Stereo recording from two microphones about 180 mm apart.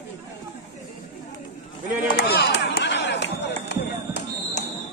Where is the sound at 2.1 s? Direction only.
65° left (ahead or behind).